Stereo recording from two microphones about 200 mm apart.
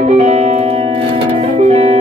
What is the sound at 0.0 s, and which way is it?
Music, 35° right (ahead or behind).